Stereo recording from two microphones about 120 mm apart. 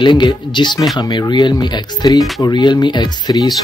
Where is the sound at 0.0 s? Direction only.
40° left (ahead or behind).